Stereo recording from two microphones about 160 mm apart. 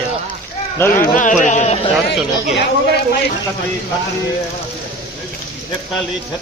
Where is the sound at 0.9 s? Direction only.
55° left (ahead or behind).